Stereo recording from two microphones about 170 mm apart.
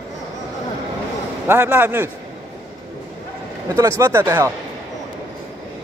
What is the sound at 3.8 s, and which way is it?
Speech, 20° right (ahead or behind).